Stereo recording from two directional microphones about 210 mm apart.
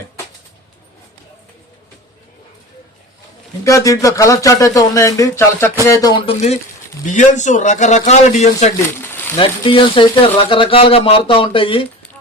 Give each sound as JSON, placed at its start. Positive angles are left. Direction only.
{"t": 3.6, "sound": "a man's voice", "side_deg": 15}
{"t": 9.0, "sound": "a sound", "side_deg": 10}
{"t": 9.4, "sound": "speech", "side_deg": 25}